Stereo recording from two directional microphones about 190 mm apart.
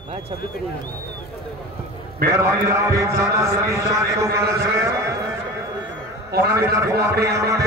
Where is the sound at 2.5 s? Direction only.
15° right (ahead or behind).